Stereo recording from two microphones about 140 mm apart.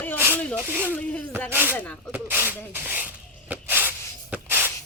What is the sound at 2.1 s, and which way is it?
Rub, 15° right (ahead or behind).